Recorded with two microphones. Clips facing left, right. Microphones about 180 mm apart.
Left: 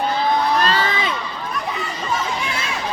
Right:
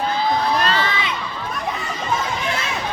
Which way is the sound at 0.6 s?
35° left (ahead or behind).